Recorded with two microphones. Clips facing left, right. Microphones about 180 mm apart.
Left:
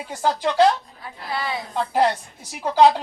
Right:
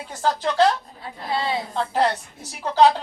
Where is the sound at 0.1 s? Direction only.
10° left (ahead or behind).